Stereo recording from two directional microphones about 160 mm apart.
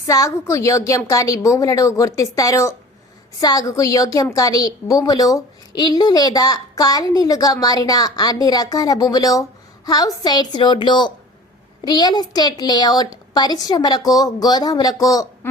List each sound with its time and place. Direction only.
0.0 s a woman's voice: 20° left (ahead or behind)